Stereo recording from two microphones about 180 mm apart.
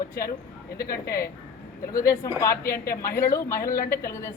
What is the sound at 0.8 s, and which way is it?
Speech, 55° left (ahead or behind).